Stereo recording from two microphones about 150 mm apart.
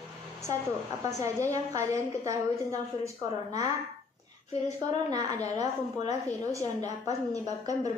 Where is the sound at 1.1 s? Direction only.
20° right (ahead or behind).